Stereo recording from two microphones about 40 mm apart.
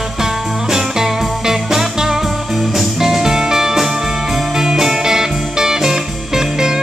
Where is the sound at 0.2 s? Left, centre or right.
Centre.